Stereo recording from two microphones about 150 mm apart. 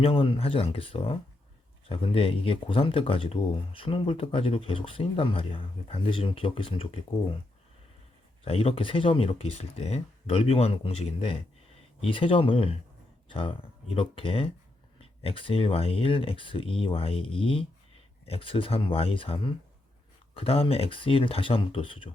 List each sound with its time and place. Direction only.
0.0 s speech: 40° left (ahead or behind)
8.4 s speech: 40° left (ahead or behind)